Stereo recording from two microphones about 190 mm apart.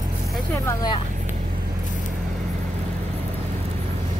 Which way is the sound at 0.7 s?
20° left (ahead or behind).